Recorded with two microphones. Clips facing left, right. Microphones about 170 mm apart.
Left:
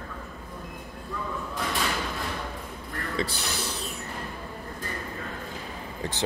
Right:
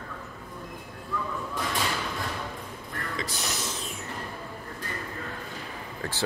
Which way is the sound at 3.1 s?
30° left (ahead or behind).